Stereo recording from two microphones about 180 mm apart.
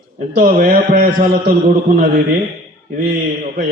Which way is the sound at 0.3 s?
50° right (ahead or behind).